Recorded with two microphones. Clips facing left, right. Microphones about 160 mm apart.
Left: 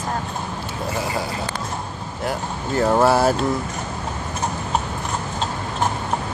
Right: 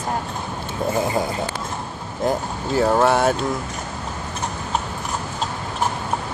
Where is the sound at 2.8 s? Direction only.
5° left (ahead or behind).